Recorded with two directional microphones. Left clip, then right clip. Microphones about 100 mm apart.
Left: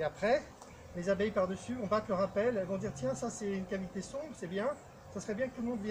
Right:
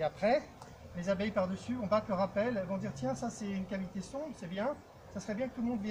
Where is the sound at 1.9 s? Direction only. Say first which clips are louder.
Even; 25° left (ahead or behind).